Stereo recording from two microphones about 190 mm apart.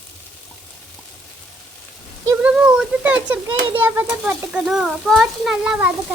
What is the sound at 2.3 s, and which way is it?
A child's voice, 5° right (ahead or behind).